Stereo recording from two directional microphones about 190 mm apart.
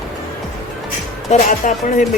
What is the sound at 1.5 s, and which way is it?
Speech, 45° left (ahead or behind).